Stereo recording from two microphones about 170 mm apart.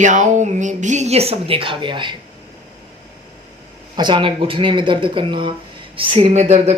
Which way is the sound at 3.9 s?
25° right (ahead or behind).